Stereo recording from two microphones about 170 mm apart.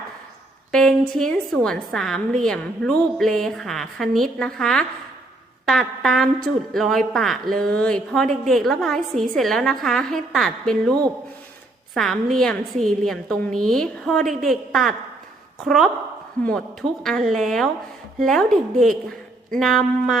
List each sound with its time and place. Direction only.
0.7 s speech: 5° left (ahead or behind)
11.9 s speech: centre (ahead or behind)